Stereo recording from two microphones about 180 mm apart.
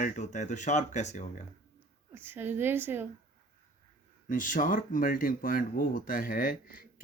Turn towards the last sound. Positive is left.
turn(degrees=55)  # may be behind; listen again after turning